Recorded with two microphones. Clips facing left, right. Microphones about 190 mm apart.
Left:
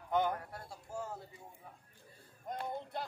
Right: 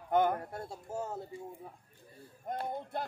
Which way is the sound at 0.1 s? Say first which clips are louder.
Right 5 dB; 50° right (ahead or behind).